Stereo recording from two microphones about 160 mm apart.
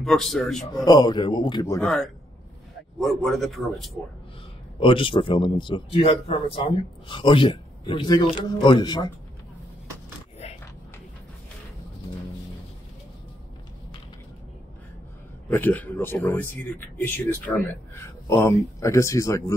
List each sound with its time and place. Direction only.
0.0 s a man's voice: centre (ahead or behind)
0.7 s speech: 25° left (ahead or behind)
1.8 s a man's voice: 5° left (ahead or behind)
4.7 s speech: 35° left (ahead or behind)
15.4 s speech: 10° left (ahead or behind)